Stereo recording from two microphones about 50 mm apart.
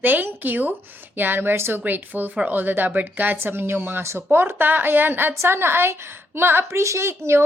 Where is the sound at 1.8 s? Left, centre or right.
Right.